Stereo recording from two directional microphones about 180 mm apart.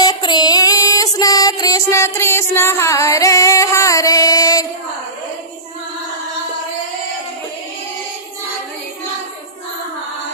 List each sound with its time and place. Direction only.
0.0 s music: 25° left (ahead or behind)